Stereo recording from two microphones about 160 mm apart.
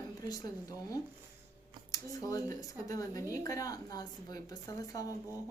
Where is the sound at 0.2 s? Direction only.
25° left (ahead or behind).